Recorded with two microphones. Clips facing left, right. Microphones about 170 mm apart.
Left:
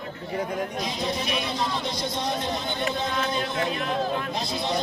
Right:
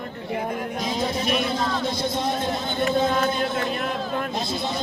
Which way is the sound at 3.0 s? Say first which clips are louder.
Right 5 dB; 50° right (ahead or behind).